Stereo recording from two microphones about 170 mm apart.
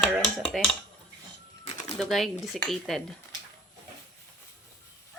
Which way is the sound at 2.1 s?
Centre (ahead or behind).